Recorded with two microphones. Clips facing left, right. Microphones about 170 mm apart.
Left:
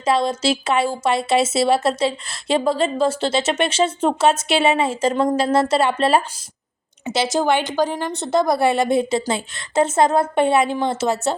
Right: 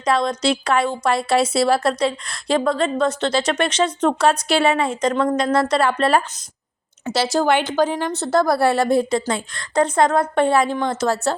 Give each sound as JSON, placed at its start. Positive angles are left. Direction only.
{"t": 0.0, "sound": "a woman's voice", "side_deg": 25}
{"t": 7.3, "sound": "a woman's voice", "side_deg": 10}
{"t": 8.1, "sound": "a woman's voice", "side_deg": 20}